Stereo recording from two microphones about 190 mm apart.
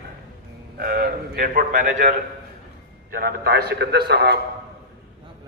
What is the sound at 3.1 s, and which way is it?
A man's voice, 55° right (ahead or behind).